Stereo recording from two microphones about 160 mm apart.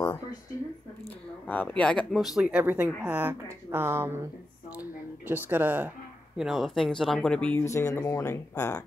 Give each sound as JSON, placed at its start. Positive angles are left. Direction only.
{"t": 1.5, "sound": "speech", "side_deg": 10}
{"t": 6.3, "sound": "speech", "side_deg": 0}
{"t": 7.6, "sound": "speech", "side_deg": 20}